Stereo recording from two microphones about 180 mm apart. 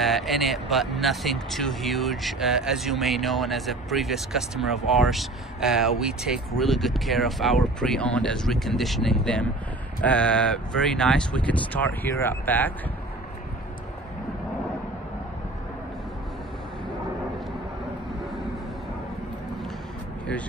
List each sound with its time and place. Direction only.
0.0 s speech: centre (ahead or behind)